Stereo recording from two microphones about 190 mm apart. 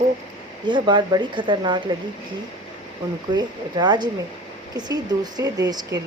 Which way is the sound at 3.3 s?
20° right (ahead or behind).